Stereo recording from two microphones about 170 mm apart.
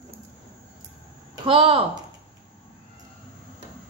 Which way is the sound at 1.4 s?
30° right (ahead or behind).